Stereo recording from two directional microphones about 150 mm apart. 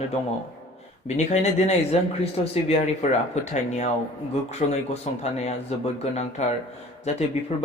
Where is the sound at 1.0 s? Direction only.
45° left (ahead or behind).